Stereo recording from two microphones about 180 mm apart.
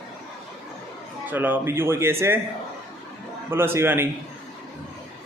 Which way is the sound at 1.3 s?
10° right (ahead or behind).